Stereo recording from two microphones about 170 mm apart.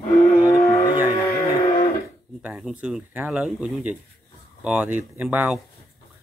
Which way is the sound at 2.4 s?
5° right (ahead or behind).